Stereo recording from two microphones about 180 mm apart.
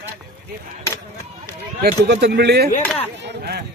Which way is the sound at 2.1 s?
70° right (ahead or behind).